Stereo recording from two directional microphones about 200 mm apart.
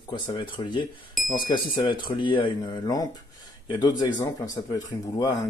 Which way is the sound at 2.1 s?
25° left (ahead or behind).